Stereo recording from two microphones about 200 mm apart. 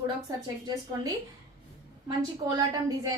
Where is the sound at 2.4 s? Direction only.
25° right (ahead or behind).